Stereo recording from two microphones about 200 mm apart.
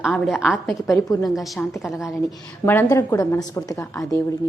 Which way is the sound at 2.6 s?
15° left (ahead or behind).